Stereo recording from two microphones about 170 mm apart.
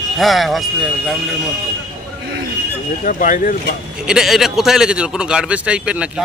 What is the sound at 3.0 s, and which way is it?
Speech, 55° left (ahead or behind).